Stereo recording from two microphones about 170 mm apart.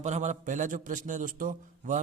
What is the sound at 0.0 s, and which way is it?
A man's voice, 45° right (ahead or behind).